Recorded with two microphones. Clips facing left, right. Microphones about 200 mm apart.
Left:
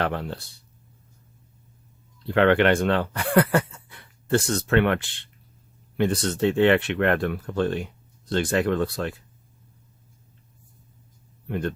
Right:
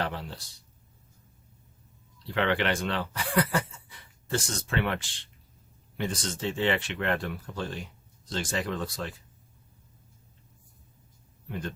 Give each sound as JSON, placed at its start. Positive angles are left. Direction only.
{"t": 0.0, "sound": "speech", "side_deg": 60}
{"t": 2.2, "sound": "speech", "side_deg": 55}
{"t": 11.4, "sound": "speech", "side_deg": 60}